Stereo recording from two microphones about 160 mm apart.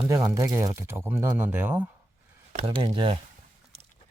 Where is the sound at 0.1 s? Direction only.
20° right (ahead or behind).